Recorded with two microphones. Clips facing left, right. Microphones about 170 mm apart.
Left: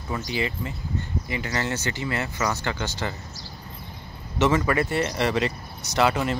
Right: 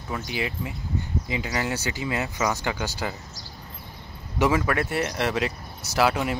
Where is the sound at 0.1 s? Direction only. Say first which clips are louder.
Left 2 dB; 5° right (ahead or behind).